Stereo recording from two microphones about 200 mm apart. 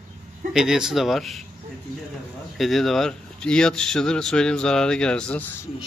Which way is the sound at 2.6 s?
Centre (ahead or behind).